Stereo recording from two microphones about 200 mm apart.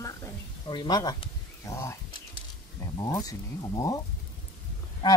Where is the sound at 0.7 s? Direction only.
20° left (ahead or behind).